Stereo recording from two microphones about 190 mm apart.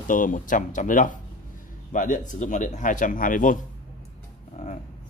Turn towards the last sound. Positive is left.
turn(degrees=45)  # may be behind; listen again after turning